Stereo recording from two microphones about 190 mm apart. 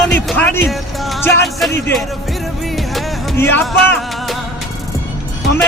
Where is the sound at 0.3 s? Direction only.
5° left (ahead or behind).